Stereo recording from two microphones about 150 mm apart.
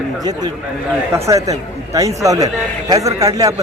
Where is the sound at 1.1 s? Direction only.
20° right (ahead or behind).